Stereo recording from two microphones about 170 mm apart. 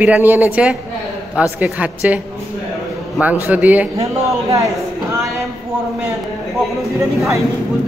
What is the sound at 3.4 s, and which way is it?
A man's voice, 10° right (ahead or behind).